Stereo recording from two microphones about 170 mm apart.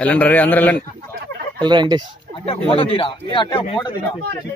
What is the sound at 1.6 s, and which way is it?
Speech, 25° right (ahead or behind).